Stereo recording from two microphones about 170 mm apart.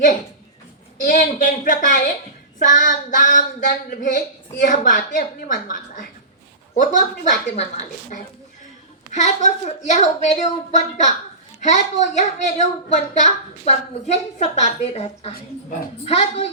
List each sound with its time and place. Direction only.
1.0 s a woman's voice: 50° left (ahead or behind)